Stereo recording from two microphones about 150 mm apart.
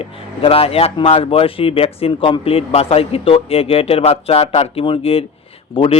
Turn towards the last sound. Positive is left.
turn(degrees=35)  # may be behind; listen again after turning